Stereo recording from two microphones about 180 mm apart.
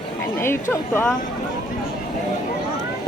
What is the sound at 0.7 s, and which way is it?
Speech, 15° left (ahead or behind).